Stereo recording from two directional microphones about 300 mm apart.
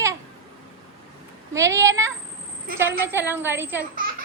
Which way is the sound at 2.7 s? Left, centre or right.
Right.